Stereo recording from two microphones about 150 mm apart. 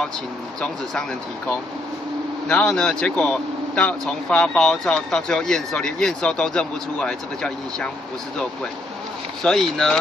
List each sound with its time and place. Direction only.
2.4 s speech: 5° left (ahead or behind)
9.4 s speech: 5° left (ahead or behind)